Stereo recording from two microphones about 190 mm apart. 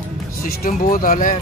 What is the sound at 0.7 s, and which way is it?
Speech, 45° left (ahead or behind).